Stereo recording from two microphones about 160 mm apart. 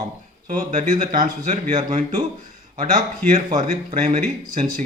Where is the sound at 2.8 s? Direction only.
60° right (ahead or behind).